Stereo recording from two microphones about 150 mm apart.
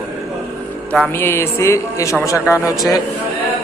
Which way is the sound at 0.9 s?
10° left (ahead or behind).